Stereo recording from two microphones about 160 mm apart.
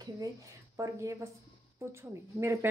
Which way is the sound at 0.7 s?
20° right (ahead or behind).